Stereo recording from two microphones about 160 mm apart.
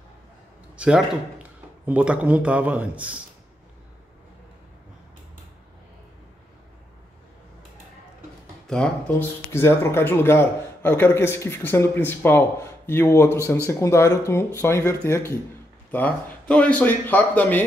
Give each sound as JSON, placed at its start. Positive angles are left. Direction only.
{"t": 0.7, "sound": "a man's voice", "side_deg": -5}
{"t": 8.6, "sound": "speech", "side_deg": 5}
{"t": 9.5, "sound": "a man's voice", "side_deg": 15}